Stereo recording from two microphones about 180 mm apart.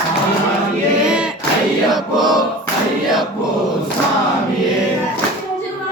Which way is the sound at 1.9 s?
Centre (ahead or behind).